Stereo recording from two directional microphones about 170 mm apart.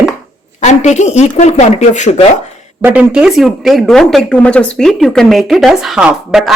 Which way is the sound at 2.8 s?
10° right (ahead or behind).